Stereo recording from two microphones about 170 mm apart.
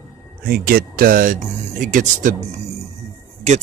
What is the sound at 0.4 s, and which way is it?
A man's voice, 60° right (ahead or behind).